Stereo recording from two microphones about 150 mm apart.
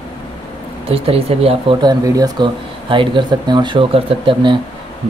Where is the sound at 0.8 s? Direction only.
40° right (ahead or behind).